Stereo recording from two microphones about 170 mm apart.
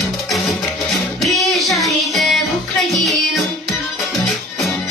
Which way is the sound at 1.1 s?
Centre (ahead or behind).